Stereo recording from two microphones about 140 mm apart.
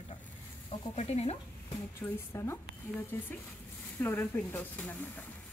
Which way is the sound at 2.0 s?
20° left (ahead or behind).